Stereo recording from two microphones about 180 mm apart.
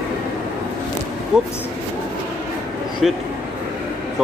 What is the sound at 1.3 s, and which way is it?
Speech, 5° right (ahead or behind).